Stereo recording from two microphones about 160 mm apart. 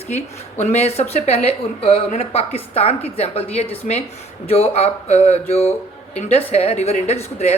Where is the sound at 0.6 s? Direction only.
45° left (ahead or behind).